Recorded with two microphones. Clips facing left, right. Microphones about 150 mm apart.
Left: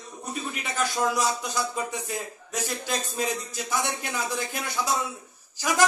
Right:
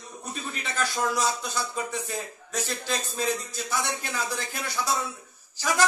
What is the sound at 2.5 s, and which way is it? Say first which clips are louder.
A man's voice: even; 15° left (ahead or behind).